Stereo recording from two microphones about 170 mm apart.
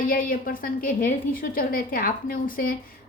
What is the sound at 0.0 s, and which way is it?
A woman's voice, 55° left (ahead or behind).